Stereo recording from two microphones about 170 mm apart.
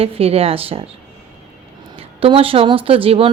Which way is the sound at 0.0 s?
35° right (ahead or behind).